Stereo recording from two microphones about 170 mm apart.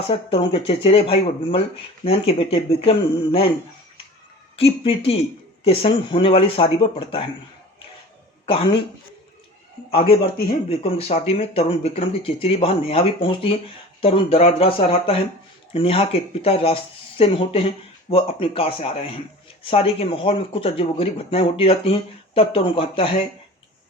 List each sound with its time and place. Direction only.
0.1 s speech: 30° left (ahead or behind)
4.5 s speech: 35° left (ahead or behind)
8.4 s speech: 30° left (ahead or behind)
9.9 s speech: 35° left (ahead or behind)